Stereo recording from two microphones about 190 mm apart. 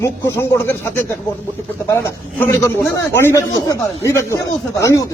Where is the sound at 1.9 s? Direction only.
10° left (ahead or behind).